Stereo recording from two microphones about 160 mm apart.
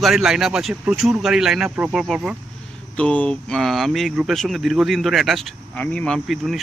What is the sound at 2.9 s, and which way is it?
Speech, 10° left (ahead or behind).